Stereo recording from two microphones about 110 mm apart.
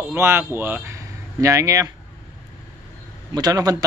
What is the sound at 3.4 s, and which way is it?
Speech, 35° right (ahead or behind).